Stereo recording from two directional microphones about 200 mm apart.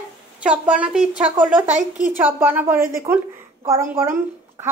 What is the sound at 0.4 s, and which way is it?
A woman's voice, 5° right (ahead or behind).